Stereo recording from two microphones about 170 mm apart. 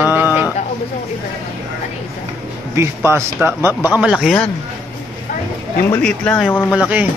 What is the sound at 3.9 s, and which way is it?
Speech, 5° right (ahead or behind).